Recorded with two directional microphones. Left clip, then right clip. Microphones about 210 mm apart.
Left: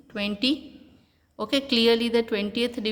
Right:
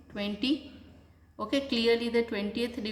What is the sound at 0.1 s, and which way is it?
A woman's voice, 40° left (ahead or behind).